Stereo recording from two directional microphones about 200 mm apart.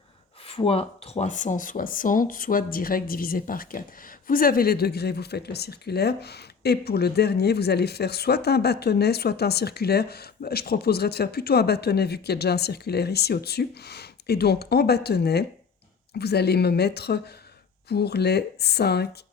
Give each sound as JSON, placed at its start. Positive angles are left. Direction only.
{"t": 0.4, "sound": "speech", "side_deg": 30}